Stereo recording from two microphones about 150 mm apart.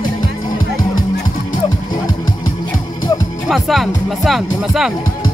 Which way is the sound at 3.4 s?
Centre (ahead or behind).